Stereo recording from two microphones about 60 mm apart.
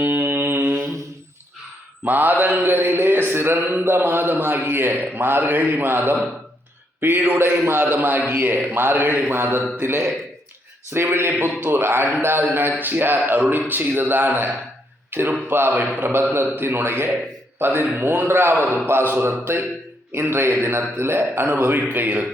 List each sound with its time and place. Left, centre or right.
0.0 s mantra: right
2.0 s a man's voice: right
21.6 s a man's voice: right